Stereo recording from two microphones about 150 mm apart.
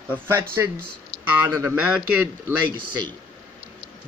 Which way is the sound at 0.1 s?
15° right (ahead or behind).